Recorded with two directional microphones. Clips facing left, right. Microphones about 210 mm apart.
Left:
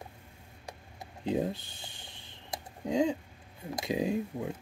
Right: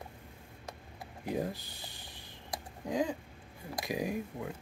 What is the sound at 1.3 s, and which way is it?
Speech, 25° left (ahead or behind).